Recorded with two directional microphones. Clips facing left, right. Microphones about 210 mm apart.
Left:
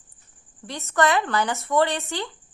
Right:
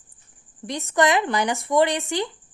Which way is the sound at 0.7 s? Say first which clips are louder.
Right 1 dB; 15° right (ahead or behind).